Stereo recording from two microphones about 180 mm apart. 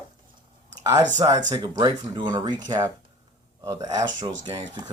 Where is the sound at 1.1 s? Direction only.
20° right (ahead or behind).